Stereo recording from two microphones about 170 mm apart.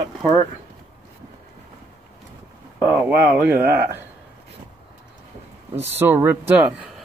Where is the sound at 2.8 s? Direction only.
10° right (ahead or behind).